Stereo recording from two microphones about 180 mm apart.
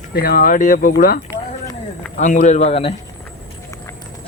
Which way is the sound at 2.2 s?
45° left (ahead or behind).